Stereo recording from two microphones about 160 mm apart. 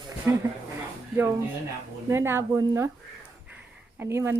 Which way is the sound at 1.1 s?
15° right (ahead or behind).